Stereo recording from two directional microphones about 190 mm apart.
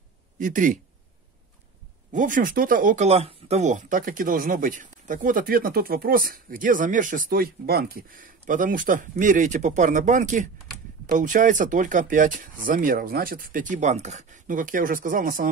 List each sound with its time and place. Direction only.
0.4 s speech: 45° right (ahead or behind)
2.1 s speech: 45° right (ahead or behind)